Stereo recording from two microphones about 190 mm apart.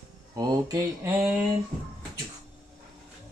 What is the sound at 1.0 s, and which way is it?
Speech, 10° right (ahead or behind).